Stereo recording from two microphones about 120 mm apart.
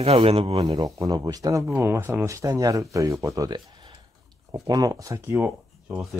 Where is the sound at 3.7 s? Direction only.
40° right (ahead or behind).